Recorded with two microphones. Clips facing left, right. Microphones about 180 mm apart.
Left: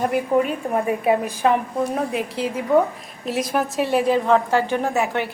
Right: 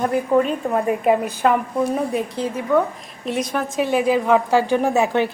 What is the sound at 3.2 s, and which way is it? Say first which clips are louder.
A woman's voice: left 1 dB; 5° left (ahead or behind).